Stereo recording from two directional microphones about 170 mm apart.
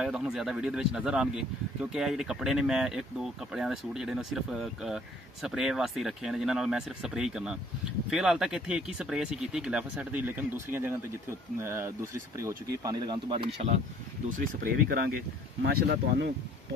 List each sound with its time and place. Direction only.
0.0 s speech: 5° right (ahead or behind); by 13.7 s 35° right (ahead or behind)
14.4 s speech: 60° right (ahead or behind)
15.6 s speech: 75° right (ahead or behind)